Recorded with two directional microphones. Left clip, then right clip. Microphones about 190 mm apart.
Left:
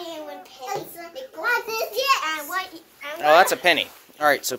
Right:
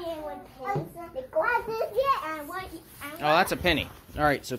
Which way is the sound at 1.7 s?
25° left (ahead or behind).